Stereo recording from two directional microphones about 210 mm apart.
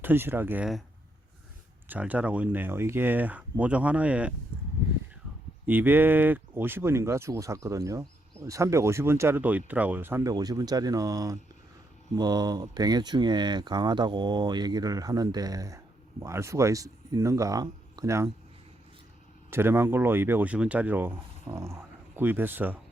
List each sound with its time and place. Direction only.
0.0 s speech: 10° right (ahead or behind)
1.9 s speech: 5° right (ahead or behind)
5.6 s speech: 10° right (ahead or behind)
19.5 s speech: 10° right (ahead or behind)